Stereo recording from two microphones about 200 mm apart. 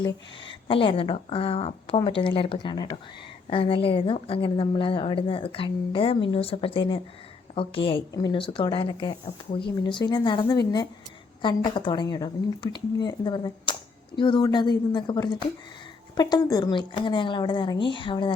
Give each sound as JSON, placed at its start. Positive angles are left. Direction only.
{"t": 0.0, "sound": "speech", "side_deg": 25}